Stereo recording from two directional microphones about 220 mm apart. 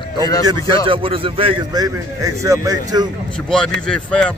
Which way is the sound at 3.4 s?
5° left (ahead or behind).